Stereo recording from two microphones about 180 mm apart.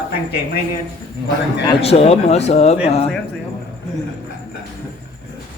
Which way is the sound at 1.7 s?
35° left (ahead or behind).